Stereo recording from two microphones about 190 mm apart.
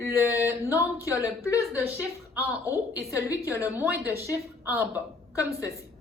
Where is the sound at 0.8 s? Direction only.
15° left (ahead or behind).